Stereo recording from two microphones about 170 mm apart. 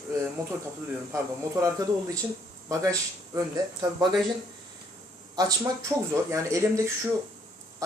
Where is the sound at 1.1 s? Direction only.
20° right (ahead or behind).